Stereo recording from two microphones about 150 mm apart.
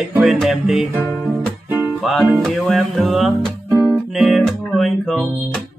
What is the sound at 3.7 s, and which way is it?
Music, 10° right (ahead or behind).